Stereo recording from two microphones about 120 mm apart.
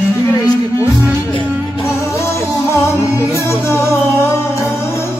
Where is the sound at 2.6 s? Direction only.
25° left (ahead or behind).